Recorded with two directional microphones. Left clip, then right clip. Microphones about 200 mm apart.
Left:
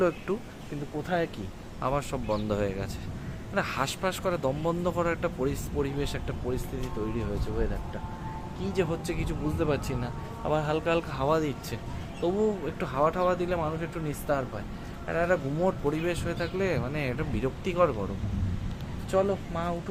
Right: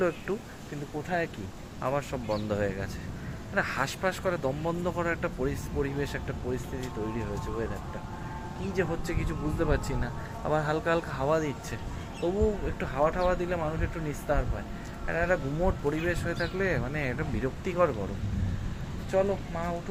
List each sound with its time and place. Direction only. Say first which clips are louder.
0.3 s speech: left 1 dB; 15° left (ahead or behind)
1.8 s speech: left 1 dB; 15° left (ahead or behind)
8.7 s speech: left 1 dB; 10° left (ahead or behind)
19.1 s speech: left 1 dB; 15° left (ahead or behind)